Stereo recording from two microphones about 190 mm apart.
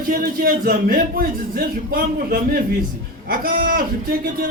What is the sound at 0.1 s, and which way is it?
A man's voice, 50° right (ahead or behind).